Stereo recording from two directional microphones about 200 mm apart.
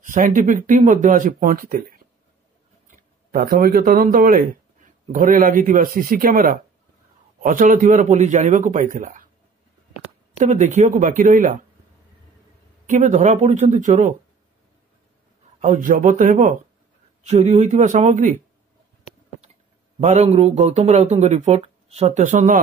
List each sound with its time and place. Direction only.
0.0 s speech: 40° right (ahead or behind)
3.0 s speech: 45° right (ahead or behind)
10.4 s speech: 40° right (ahead or behind)
12.8 s speech: 35° right (ahead or behind)
15.6 s speech: 40° right (ahead or behind)
20.0 s speech: 35° right (ahead or behind)